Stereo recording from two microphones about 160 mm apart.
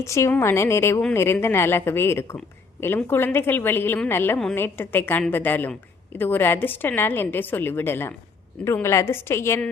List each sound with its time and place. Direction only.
0.0 s a woman's voice: 20° left (ahead or behind)